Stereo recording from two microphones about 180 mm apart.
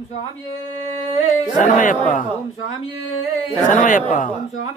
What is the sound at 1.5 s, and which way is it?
Speech, 45° left (ahead or behind).